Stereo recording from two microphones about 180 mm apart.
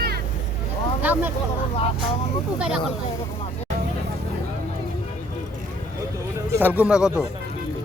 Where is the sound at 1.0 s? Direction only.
10° right (ahead or behind).